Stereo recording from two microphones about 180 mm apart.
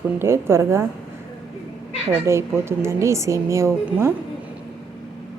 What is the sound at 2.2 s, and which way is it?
A woman's voice, 15° right (ahead or behind).